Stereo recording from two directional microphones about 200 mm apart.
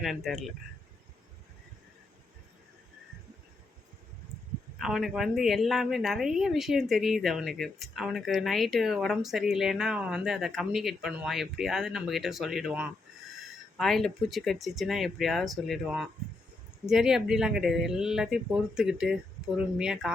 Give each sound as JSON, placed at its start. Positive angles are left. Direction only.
{"t": 0.0, "sound": "a woman's voice", "side_deg": 0}
{"t": 4.8, "sound": "a woman's voice", "side_deg": 0}